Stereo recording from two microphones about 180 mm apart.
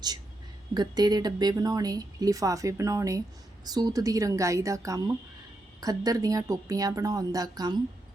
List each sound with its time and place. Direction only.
0.7 s speech: 20° right (ahead or behind)